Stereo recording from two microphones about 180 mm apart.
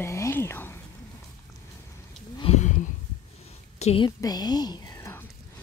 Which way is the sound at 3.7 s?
35° left (ahead or behind).